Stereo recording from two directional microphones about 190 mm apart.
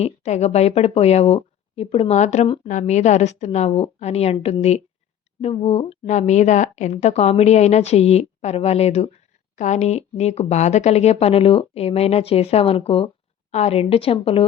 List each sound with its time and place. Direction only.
0.0 s speech: 35° left (ahead or behind)